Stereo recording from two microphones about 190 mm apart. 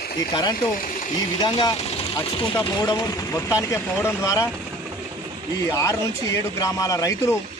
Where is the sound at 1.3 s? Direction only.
20° left (ahead or behind).